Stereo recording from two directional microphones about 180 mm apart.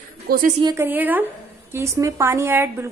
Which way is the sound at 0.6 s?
25° right (ahead or behind).